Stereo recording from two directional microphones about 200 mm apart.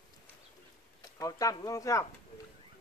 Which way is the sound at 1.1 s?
15° left (ahead or behind).